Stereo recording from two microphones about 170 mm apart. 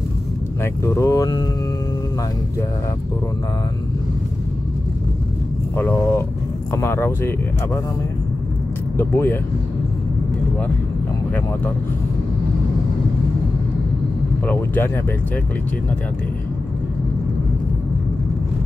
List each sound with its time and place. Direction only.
0.6 s speech: 15° left (ahead or behind)
5.8 s speech: 15° left (ahead or behind)
8.9 s speech: 15° left (ahead or behind)
14.4 s speech: 10° left (ahead or behind)